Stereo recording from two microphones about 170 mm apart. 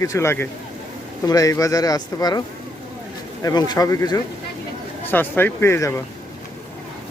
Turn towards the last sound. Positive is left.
turn(degrees=15)  # may be behind; listen again after turning